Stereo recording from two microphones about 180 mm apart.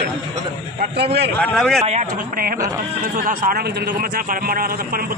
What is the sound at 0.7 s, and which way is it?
Speech, 65° right (ahead or behind).